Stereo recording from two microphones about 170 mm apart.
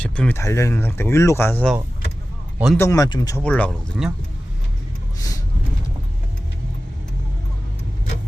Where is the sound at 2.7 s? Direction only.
20° left (ahead or behind).